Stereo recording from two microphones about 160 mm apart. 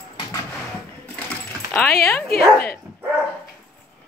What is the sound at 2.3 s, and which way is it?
Speech, 70° left (ahead or behind).